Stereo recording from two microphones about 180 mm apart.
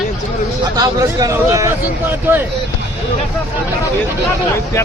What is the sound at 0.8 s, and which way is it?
A man's voice, 20° right (ahead or behind).